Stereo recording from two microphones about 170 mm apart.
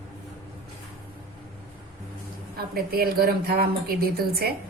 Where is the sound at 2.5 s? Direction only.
60° right (ahead or behind).